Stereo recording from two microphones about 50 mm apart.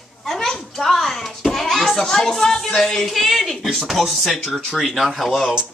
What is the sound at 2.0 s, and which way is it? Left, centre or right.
A woman's voice, centre.